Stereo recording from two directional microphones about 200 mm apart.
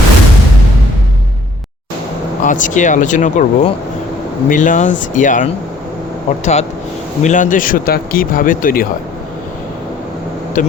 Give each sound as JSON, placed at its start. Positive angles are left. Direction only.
{"t": 2.4, "sound": "speech", "side_deg": 40}
{"t": 10.6, "sound": "speech", "side_deg": 40}